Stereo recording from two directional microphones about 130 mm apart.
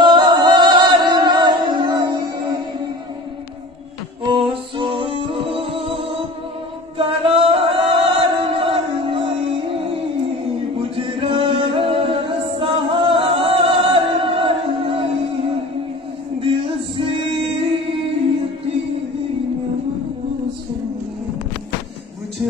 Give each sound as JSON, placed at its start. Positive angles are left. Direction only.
{"t": 0.0, "sound": "music", "side_deg": -35}
{"t": 4.2, "sound": "music", "side_deg": -40}
{"t": 7.0, "sound": "singing", "side_deg": -45}
{"t": 10.8, "sound": "music", "side_deg": -45}